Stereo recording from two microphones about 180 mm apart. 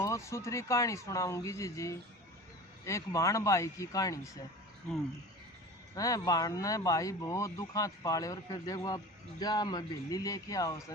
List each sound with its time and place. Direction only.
0.0 s speech: 15° left (ahead or behind)
5.9 s speech: 20° left (ahead or behind)